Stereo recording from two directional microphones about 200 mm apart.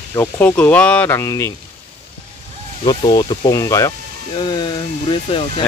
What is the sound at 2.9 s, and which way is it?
Speech, 20° left (ahead or behind).